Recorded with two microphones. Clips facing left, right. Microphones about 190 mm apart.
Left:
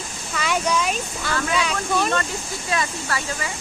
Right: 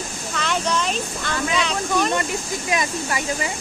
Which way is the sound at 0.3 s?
10° left (ahead or behind).